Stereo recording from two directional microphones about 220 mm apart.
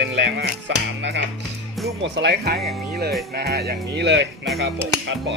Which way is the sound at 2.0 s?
50° right (ahead or behind).